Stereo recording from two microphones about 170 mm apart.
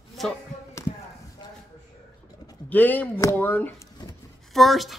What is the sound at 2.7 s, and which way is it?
Speech, 10° left (ahead or behind).